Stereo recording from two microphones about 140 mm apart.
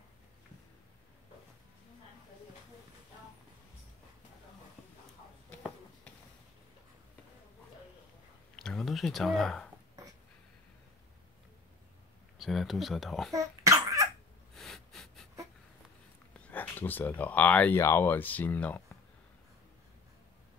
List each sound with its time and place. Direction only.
8.5 s speech: 5° left (ahead or behind)
12.4 s speech: centre (ahead or behind)
13.3 s cough: 25° right (ahead or behind)
14.5 s snort: centre (ahead or behind)
16.3 s speech: 10° left (ahead or behind)